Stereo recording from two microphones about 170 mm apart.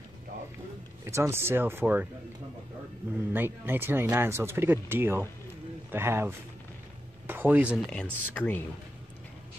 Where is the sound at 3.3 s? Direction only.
10° right (ahead or behind).